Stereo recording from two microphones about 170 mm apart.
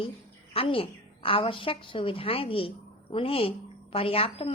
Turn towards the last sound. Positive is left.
turn(degrees=35)  # may be behind; listen again after turning